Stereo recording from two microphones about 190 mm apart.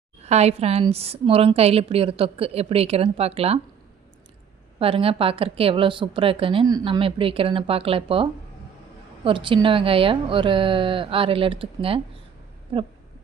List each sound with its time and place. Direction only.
0.2 s a woman's voice: 35° right (ahead or behind)
4.8 s a woman's voice: 30° right (ahead or behind)